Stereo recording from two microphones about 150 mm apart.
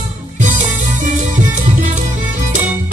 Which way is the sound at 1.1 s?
60° right (ahead or behind).